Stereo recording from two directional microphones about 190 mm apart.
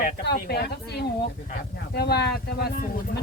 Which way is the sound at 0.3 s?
55° left (ahead or behind).